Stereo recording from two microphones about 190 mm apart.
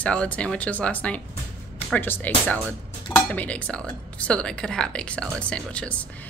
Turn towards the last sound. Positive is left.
turn(degrees=5)  # may be behind; listen again after turning